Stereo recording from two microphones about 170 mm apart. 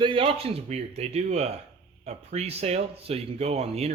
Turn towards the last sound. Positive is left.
turn(degrees=-40)  # may be behind; listen again after turning